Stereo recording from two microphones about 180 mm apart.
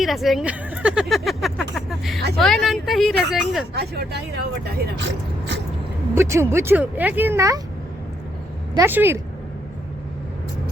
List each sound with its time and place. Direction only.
0.0 s speech: centre (ahead or behind)
3.8 s speech: 65° right (ahead or behind)
6.1 s speech: 15° right (ahead or behind)
8.7 s speech: 15° right (ahead or behind)